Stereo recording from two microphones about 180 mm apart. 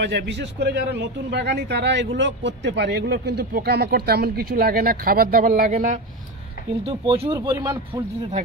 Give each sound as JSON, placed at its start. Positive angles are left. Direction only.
{"t": 0.0, "sound": "a man's voice", "side_deg": -75}
{"t": 6.8, "sound": "speech", "side_deg": -30}